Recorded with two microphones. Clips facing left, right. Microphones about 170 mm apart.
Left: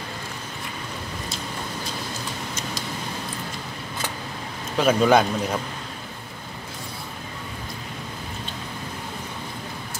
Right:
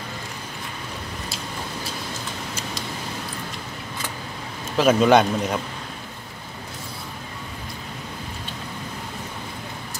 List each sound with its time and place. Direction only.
4.7 s a man's voice: centre (ahead or behind)